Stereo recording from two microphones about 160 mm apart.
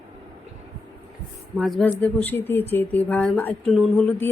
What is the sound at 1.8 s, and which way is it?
Speech, 10° left (ahead or behind).